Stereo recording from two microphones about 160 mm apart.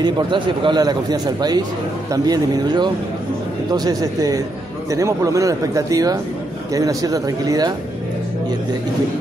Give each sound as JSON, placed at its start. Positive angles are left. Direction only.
{"t": 0.0, "sound": "speech", "side_deg": -30}